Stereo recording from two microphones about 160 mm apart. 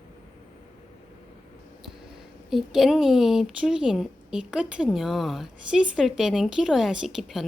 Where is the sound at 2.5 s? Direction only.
Centre (ahead or behind).